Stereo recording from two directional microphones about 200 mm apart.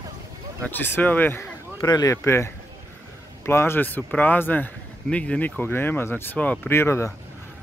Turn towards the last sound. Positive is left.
turn(degrees=10)  # may be behind; listen again after turning